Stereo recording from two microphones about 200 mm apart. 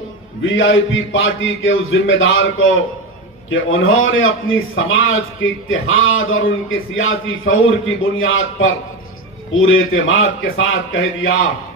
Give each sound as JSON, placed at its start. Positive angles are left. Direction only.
{"t": 0.5, "sound": "a man's voice", "side_deg": 75}